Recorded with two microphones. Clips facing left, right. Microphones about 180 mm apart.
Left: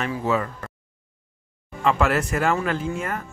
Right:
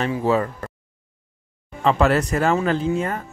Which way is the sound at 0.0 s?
35° right (ahead or behind).